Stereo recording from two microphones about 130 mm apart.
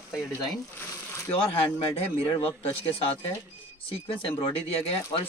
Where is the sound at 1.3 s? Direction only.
45° left (ahead or behind).